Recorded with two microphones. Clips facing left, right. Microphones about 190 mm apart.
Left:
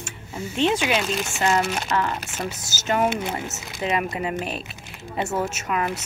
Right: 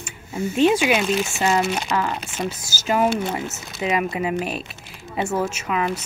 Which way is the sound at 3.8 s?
10° right (ahead or behind).